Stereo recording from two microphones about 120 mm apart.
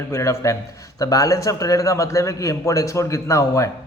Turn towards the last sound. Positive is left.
turn(degrees=25)  # may be behind; listen again after turning